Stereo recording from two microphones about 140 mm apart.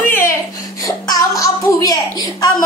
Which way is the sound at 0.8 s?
25° left (ahead or behind).